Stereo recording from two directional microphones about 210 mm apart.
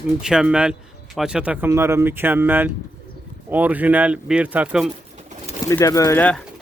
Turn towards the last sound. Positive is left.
turn(degrees=10)  # may be behind; listen again after turning